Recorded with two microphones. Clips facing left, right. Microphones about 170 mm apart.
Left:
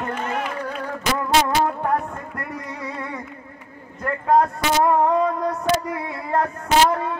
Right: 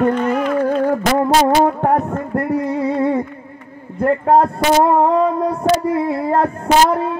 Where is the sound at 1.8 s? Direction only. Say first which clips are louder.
Right 7 dB; 35° right (ahead or behind).